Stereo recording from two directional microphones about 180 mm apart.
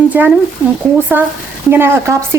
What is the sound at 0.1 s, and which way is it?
A woman's voice, 10° right (ahead or behind).